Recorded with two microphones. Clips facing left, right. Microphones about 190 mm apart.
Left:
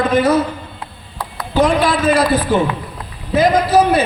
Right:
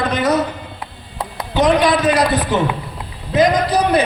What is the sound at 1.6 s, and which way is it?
Speech, 20° right (ahead or behind).